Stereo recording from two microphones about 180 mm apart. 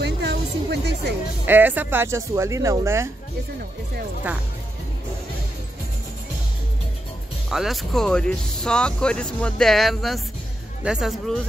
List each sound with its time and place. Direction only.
0.0 s music: 70° right (ahead or behind)
1.5 s speech: 10° right (ahead or behind)
7.4 s speech: centre (ahead or behind)